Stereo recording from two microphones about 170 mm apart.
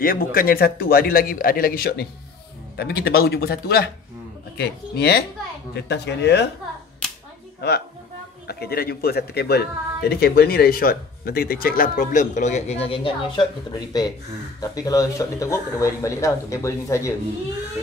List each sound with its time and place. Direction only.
0.0 s speech: 60° left (ahead or behind)
5.8 s speech: 80° left
7.6 s speech: 75° left (ahead or behind); by 17.1 s 15° left (ahead or behind)